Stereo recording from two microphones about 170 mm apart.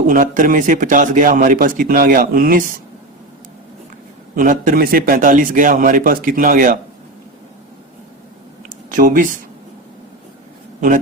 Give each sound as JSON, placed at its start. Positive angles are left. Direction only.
{"t": 0.1, "sound": "a man's voice", "side_deg": -50}
{"t": 4.4, "sound": "a man's voice", "side_deg": -55}
{"t": 8.9, "sound": "speech", "side_deg": -50}
{"t": 10.8, "sound": "a man's voice", "side_deg": -50}